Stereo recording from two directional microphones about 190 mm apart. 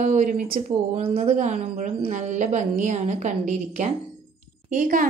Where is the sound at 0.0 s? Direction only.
40° right (ahead or behind).